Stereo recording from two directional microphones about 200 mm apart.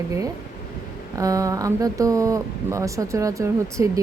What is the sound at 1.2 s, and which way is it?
Speech, 15° right (ahead or behind).